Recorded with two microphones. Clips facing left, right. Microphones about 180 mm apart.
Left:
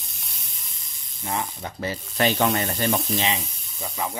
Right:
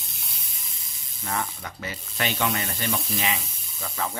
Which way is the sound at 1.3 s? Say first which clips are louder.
Left 2 dB; 25° left (ahead or behind).